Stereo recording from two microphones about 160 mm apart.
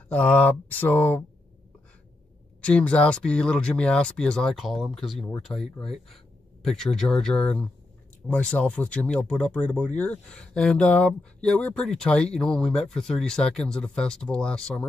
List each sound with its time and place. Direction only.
0.1 s speech: 10° left (ahead or behind)
2.6 s speech: 5° left (ahead or behind)